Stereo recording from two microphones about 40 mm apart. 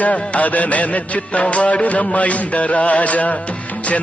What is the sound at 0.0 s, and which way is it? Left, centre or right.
Music, left.